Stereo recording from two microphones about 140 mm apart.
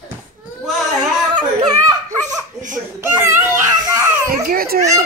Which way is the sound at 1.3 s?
30° right (ahead or behind).